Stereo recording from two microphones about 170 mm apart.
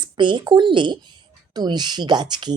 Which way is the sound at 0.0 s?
30° right (ahead or behind).